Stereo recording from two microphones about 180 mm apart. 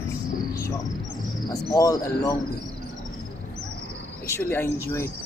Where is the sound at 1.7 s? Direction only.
20° left (ahead or behind).